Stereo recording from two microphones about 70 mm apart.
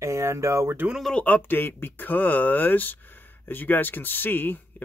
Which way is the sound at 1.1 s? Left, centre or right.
Left.